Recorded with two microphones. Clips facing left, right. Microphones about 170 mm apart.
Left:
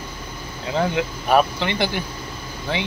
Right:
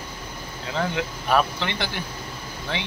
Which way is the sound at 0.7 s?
15° left (ahead or behind).